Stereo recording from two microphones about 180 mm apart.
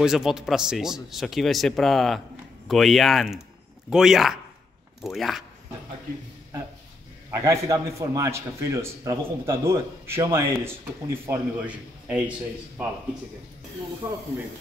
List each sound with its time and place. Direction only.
0.0 s speech: 5° right (ahead or behind)
7.2 s a man's voice: 15° right (ahead or behind)